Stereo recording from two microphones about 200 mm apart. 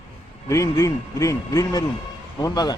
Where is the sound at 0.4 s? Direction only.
15° left (ahead or behind).